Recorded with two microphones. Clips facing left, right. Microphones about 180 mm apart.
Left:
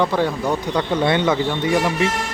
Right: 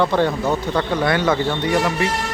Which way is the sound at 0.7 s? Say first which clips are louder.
Left 3 dB; 25° left (ahead or behind).